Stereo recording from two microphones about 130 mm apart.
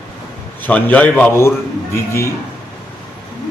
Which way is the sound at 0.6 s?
10° left (ahead or behind).